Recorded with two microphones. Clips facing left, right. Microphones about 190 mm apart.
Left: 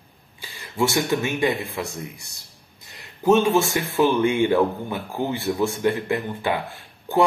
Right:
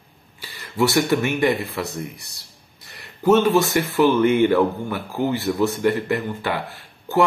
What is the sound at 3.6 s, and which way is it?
Speech, 70° right (ahead or behind).